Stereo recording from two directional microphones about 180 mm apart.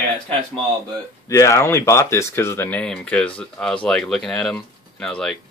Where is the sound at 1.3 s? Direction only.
15° left (ahead or behind).